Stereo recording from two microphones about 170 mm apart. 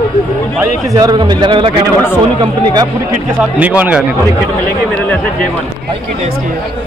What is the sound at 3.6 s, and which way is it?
Speech, 10° right (ahead or behind).